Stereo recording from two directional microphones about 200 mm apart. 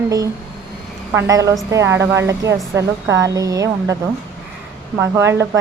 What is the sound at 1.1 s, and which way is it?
A woman's voice, 15° right (ahead or behind).